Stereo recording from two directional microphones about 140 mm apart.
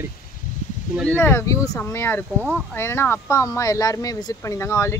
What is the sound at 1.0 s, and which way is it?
Speech, 15° left (ahead or behind).